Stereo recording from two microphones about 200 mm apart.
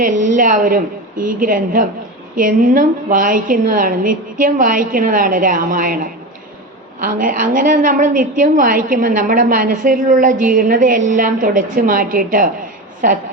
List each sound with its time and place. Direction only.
0.0 s a woman's voice: 40° right (ahead or behind)